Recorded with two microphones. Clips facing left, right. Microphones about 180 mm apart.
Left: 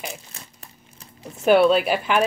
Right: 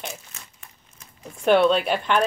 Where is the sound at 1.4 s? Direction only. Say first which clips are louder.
Left 2 dB; 5° left (ahead or behind).